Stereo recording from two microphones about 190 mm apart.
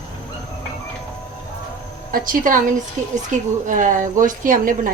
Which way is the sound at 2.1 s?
45° right (ahead or behind).